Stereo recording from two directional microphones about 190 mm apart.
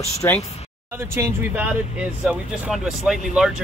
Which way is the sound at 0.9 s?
10° right (ahead or behind).